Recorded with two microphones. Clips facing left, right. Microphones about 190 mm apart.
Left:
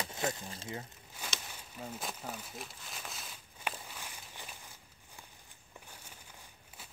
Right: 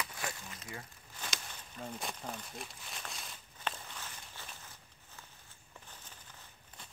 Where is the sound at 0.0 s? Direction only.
25° left (ahead or behind).